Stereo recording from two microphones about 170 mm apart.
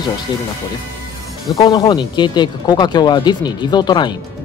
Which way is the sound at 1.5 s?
25° left (ahead or behind).